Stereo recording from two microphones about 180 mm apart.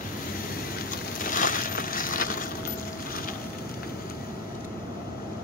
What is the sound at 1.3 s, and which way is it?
Crushing, 50° left (ahead or behind).